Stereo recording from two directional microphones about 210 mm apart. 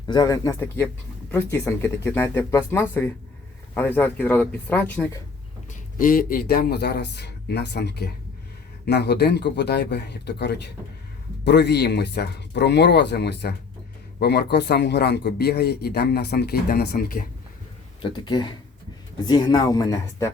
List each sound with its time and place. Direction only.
0.1 s speech: 15° left (ahead or behind)
6.0 s speech: 40° left (ahead or behind)
18.0 s speech: 20° left (ahead or behind)